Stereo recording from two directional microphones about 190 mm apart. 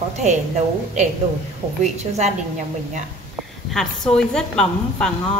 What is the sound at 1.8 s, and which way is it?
Speech, 35° right (ahead or behind).